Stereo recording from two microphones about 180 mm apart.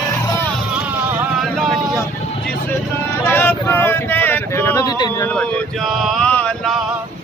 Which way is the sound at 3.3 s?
10° left (ahead or behind).